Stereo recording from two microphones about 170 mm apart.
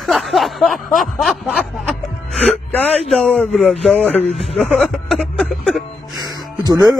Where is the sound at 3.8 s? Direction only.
5° left (ahead or behind).